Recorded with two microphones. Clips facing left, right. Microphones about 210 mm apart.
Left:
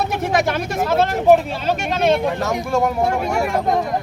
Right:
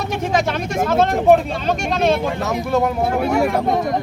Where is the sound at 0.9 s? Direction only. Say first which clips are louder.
Even; 5° left (ahead or behind).